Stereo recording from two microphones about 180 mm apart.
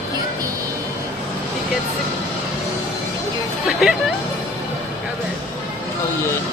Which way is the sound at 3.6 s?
Centre (ahead or behind).